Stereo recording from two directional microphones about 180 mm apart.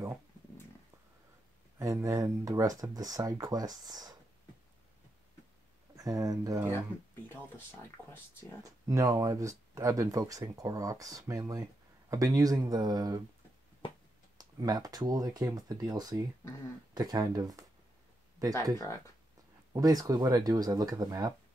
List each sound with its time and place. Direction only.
1.8 s speech: 15° right (ahead or behind)
5.9 s speech: 20° right (ahead or behind)
7.2 s speech: 10° left (ahead or behind)
8.6 s speech: 20° right (ahead or behind)
14.4 s speech: 20° right (ahead or behind)
19.7 s speech: 20° right (ahead or behind)